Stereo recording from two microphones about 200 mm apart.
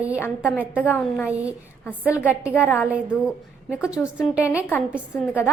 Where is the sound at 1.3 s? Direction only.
5° right (ahead or behind).